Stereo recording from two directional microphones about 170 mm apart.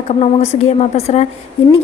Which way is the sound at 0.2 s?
40° left (ahead or behind).